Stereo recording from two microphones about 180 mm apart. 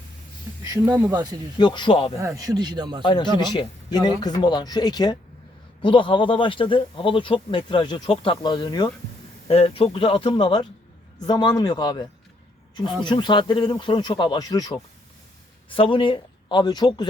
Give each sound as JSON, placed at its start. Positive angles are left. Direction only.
{"t": 0.7, "sound": "a man's voice", "side_deg": -15}
{"t": 1.5, "sound": "speech", "side_deg": 25}
{"t": 2.2, "sound": "a man's voice", "side_deg": -20}
{"t": 3.0, "sound": "a man's voice", "side_deg": 25}